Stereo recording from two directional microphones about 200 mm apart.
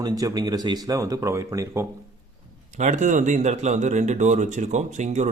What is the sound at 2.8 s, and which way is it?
Speech, 35° right (ahead or behind).